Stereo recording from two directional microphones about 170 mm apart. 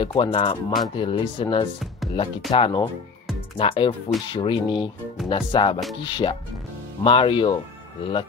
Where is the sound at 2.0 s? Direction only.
Centre (ahead or behind).